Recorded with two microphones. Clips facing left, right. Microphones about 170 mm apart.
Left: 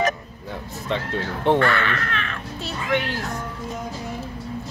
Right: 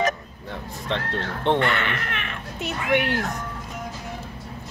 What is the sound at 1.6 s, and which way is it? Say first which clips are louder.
A child's voice: left 3 dB; 20° right (ahead or behind).